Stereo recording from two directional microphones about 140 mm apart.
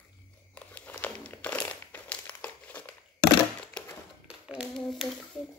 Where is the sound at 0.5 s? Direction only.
10° left (ahead or behind).